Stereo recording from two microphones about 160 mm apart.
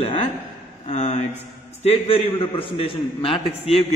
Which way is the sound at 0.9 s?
45° left (ahead or behind).